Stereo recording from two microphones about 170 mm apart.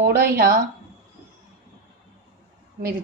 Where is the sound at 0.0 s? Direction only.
65° right (ahead or behind).